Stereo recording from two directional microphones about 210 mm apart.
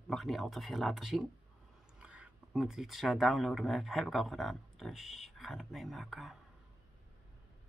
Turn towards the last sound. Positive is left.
turn(degrees=0)  # may be behind; listen again after turning